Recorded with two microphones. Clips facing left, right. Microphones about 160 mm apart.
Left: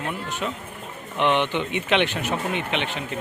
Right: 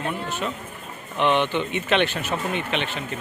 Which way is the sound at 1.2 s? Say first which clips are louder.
Right 1 dB; 15° left (ahead or behind).